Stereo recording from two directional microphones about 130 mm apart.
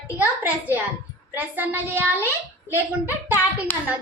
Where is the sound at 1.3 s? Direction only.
15° right (ahead or behind).